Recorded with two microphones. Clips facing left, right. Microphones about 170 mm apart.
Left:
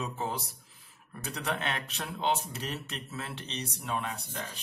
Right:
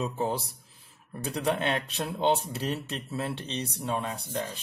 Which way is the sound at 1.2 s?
30° right (ahead or behind).